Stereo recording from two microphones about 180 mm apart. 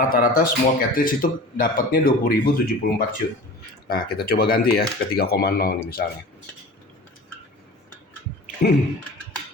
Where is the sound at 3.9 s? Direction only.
60° left (ahead or behind).